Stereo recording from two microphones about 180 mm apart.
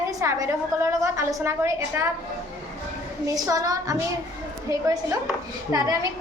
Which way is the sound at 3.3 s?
20° right (ahead or behind).